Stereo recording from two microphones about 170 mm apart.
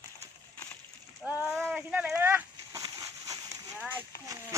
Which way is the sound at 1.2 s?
5° right (ahead or behind).